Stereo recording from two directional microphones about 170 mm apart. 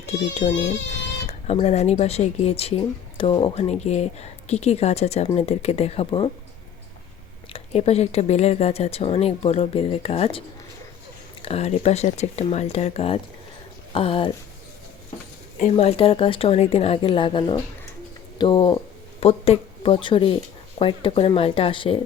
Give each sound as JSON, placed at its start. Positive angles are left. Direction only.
{"t": 0.0, "sound": "a child's voice", "side_deg": 45}
{"t": 7.5, "sound": "speech", "side_deg": 40}
{"t": 11.4, "sound": "speech", "side_deg": 40}
{"t": 15.7, "sound": "speech", "side_deg": 35}